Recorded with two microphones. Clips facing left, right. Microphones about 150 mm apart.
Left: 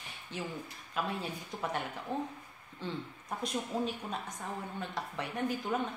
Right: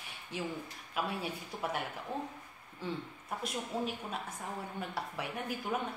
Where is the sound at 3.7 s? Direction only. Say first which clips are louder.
Left 2 dB; centre (ahead or behind).